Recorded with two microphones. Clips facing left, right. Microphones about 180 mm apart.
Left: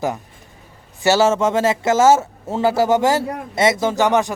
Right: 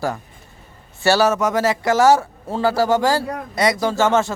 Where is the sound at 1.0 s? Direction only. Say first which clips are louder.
Left 1 dB; 20° left (ahead or behind).